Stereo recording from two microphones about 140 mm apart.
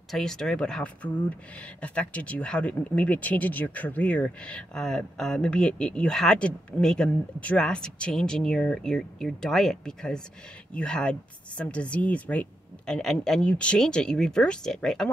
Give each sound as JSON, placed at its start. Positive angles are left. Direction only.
{"t": 0.1, "sound": "a woman's voice", "side_deg": 5}